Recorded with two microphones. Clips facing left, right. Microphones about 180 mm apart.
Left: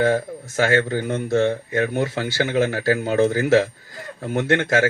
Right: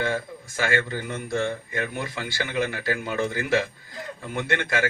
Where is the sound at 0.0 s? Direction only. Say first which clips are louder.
Left 8 dB; 45° left (ahead or behind).